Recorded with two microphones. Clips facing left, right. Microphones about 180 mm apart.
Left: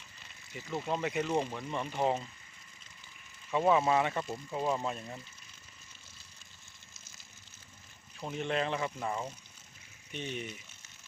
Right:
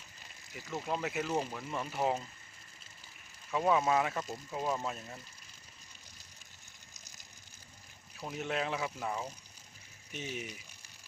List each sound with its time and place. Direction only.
0.5 s speech: centre (ahead or behind)
3.5 s speech: centre (ahead or behind)
8.2 s speech: 5° right (ahead or behind)